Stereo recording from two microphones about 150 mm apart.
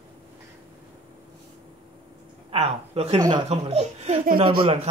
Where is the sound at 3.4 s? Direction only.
45° right (ahead or behind).